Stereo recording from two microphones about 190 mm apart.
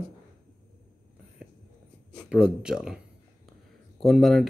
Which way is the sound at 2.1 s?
5° right (ahead or behind).